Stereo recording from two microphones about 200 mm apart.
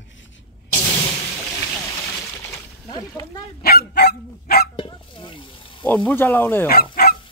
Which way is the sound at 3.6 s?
50° left (ahead or behind).